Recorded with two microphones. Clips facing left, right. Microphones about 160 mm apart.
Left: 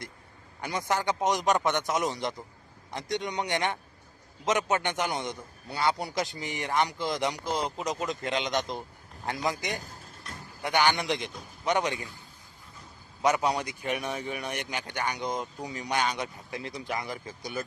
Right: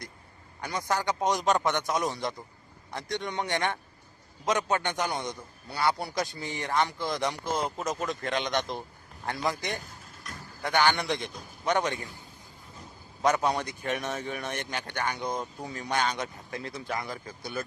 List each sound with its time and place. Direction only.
0.6 s a man's voice: 20° left (ahead or behind)
7.9 s speech: centre (ahead or behind)
8.2 s a man's voice: 20° left (ahead or behind)
9.7 s a sound: 40° left (ahead or behind)
10.6 s speech: 15° left (ahead or behind)
13.2 s speech: 15° left (ahead or behind)